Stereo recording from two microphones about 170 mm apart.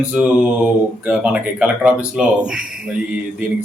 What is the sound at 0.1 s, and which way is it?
Speech, 10° right (ahead or behind).